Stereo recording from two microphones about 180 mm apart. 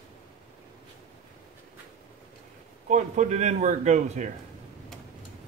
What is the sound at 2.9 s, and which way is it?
Speech, 40° right (ahead or behind).